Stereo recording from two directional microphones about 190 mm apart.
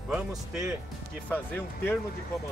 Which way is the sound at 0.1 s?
Centre (ahead or behind).